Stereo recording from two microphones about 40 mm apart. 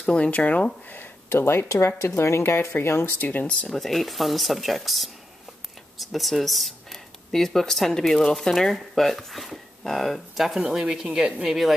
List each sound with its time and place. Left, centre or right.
0.0 s speech: left
1.3 s speech: left
3.2 s speech: left
3.7 s speech: centre
10.7 s speech: centre
11.4 s speech: centre